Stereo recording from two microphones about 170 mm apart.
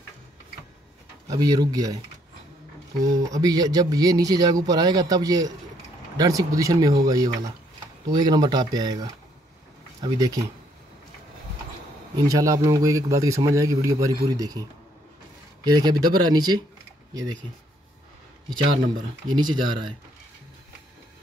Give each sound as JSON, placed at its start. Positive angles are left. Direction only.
{"t": 1.3, "sound": "speech", "side_deg": -20}
{"t": 3.2, "sound": "speech", "side_deg": -20}
{"t": 12.3, "sound": "speech", "side_deg": -20}
{"t": 19.2, "sound": "speech", "side_deg": -25}